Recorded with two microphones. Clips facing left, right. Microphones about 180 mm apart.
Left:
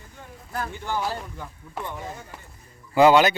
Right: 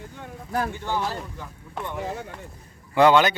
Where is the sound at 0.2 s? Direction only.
70° right (ahead or behind).